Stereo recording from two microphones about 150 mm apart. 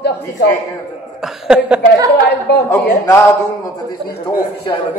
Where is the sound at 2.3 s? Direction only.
90° left.